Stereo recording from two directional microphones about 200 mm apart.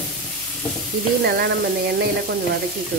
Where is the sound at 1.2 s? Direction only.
50° right (ahead or behind).